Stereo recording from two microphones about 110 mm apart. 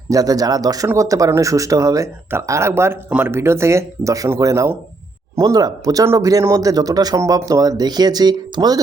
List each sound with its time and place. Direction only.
0.1 s speech: 35° right (ahead or behind)